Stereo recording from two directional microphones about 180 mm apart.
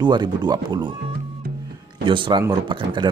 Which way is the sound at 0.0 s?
25° right (ahead or behind).